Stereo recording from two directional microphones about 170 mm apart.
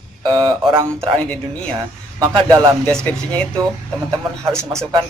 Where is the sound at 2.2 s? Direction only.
25° right (ahead or behind).